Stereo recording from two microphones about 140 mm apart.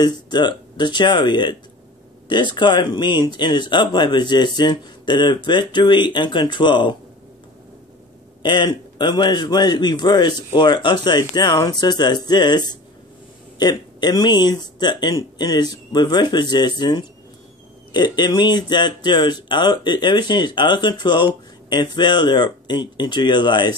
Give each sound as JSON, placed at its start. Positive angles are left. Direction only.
{"t": 0.0, "sound": "a man's voice", "side_deg": 30}
{"t": 8.4, "sound": "a man's voice", "side_deg": 35}